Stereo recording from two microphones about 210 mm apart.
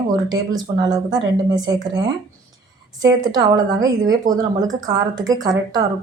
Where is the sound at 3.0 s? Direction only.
20° right (ahead or behind).